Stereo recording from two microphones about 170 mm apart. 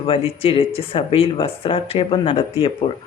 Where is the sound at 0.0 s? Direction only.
35° left (ahead or behind).